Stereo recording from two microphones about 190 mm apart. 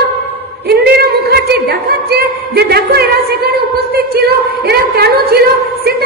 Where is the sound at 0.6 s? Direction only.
55° right (ahead or behind).